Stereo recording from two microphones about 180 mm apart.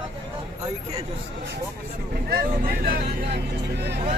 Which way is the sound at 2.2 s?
55° right (ahead or behind).